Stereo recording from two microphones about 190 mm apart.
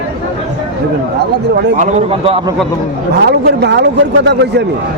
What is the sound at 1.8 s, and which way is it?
Speech, 35° right (ahead or behind).